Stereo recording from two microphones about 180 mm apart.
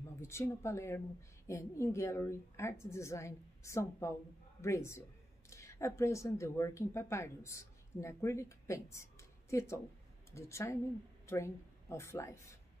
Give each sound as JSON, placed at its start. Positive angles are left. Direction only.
{"t": 0.2, "sound": "a woman's voice", "side_deg": 15}